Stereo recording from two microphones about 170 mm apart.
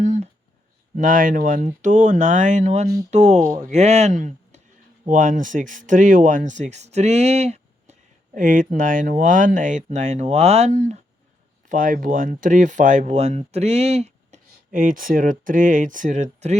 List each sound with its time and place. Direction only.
0.0 s a sound: 45° right (ahead or behind)
0.9 s speech: 55° right (ahead or behind)
8.4 s speech: 50° right (ahead or behind)